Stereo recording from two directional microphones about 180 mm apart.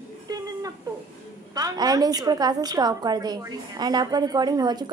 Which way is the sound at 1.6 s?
20° right (ahead or behind).